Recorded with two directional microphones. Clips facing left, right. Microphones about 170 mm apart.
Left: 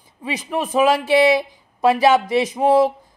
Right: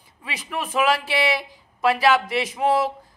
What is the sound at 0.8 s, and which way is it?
Speech, 20° left (ahead or behind).